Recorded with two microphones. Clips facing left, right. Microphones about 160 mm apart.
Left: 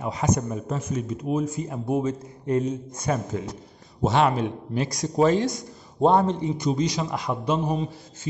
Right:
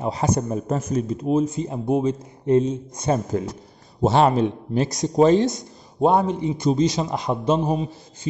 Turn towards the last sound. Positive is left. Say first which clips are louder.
# right 4 dB
turn(degrees=-25)  # may be behind; listen again after turning